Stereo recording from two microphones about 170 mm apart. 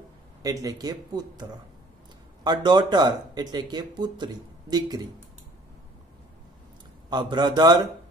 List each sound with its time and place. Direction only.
0.4 s speech: 20° right (ahead or behind)
7.1 s speech: 25° right (ahead or behind)